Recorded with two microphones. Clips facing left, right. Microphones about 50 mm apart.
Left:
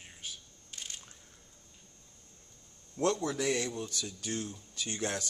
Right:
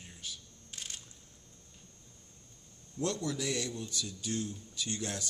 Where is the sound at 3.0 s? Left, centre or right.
Left.